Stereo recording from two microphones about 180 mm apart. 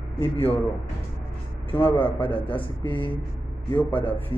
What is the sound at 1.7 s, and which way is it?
Speech, 10° left (ahead or behind).